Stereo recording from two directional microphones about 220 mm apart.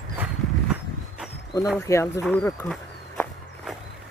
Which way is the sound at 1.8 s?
15° left (ahead or behind).